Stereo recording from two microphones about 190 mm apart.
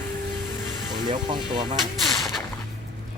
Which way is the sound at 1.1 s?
25° right (ahead or behind).